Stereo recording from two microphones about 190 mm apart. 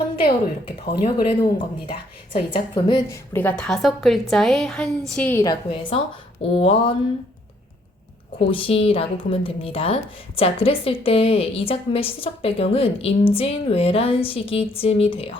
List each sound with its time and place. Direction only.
1.0 s a woman's voice: 25° left (ahead or behind)
3.3 s a woman's voice: 5° left (ahead or behind); by 6.9 s 25° left (ahead or behind)
8.4 s a woman's voice: 30° left (ahead or behind)